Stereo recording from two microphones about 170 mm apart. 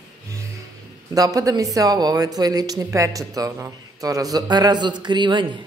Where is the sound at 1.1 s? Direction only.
20° right (ahead or behind).